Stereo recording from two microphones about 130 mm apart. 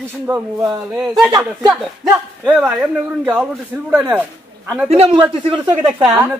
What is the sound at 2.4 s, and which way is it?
Speech, 10° right (ahead or behind).